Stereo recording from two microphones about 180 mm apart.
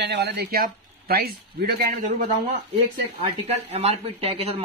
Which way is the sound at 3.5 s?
35° right (ahead or behind).